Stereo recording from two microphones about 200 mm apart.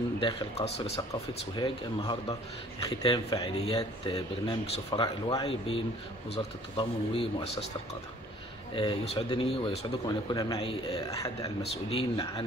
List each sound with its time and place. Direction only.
0.2 s speech: 25° left (ahead or behind)
8.7 s speech: 25° left (ahead or behind)
11.1 s speech: 15° left (ahead or behind)
11.7 s speech: 25° left (ahead or behind)